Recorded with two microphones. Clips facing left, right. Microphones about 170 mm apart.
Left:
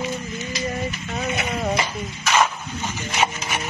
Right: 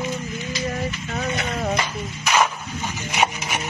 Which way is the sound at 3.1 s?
15° right (ahead or behind).